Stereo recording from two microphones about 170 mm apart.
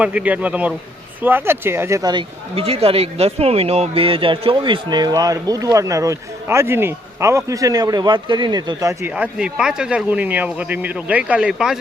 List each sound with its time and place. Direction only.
0.0 s speech: 10° right (ahead or behind)